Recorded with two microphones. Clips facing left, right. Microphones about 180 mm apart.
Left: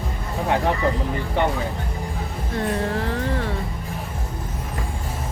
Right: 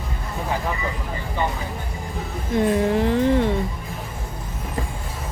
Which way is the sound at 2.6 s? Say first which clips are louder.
Right 5 dB; 15° right (ahead or behind).